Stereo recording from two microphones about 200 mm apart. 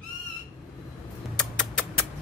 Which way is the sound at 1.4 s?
5° left (ahead or behind).